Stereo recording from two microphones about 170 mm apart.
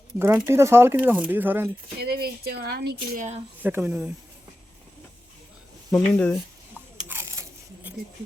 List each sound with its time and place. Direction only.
0.2 s speech: 15° right (ahead or behind)
2.0 s speech: 65° right (ahead or behind)
3.2 s a woman's voice: 40° right (ahead or behind)
3.6 s speech: 10° right (ahead or behind)
5.9 s speech: 5° left (ahead or behind)
7.1 s a sound: 15° right (ahead or behind)